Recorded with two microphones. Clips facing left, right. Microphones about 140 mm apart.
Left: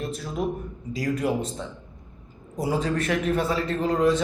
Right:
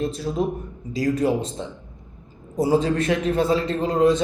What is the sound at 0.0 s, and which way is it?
Speech, 25° right (ahead or behind).